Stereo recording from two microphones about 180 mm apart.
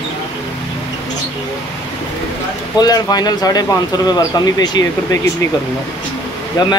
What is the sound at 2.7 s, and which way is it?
Speech, 20° left (ahead or behind).